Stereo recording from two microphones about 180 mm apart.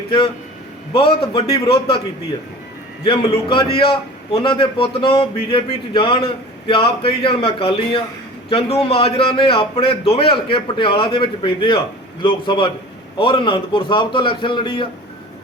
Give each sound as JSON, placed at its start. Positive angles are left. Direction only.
{"t": 0.9, "sound": "a man's voice", "side_deg": 30}
{"t": 3.0, "sound": "a man's voice", "side_deg": 30}